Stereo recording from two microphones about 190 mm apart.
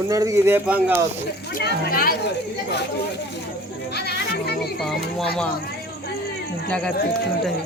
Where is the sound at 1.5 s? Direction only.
50° left (ahead or behind).